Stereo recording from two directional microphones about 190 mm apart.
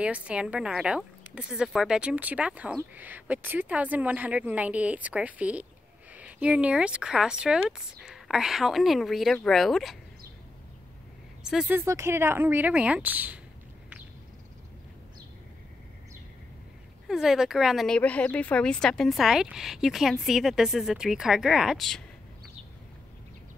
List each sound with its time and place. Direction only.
0.0 s speech: 5° right (ahead or behind)
11.4 s speech: 5° right (ahead or behind)
11.8 s speech: 15° right (ahead or behind)
17.1 s speech: centre (ahead or behind)